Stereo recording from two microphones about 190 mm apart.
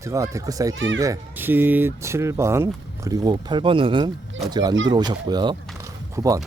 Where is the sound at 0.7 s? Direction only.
85° right.